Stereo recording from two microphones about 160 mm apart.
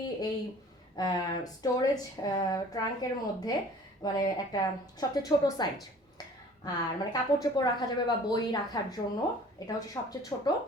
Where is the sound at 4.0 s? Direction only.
25° left (ahead or behind).